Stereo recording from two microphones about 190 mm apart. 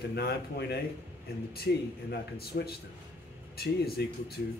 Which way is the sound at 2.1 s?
55° left (ahead or behind).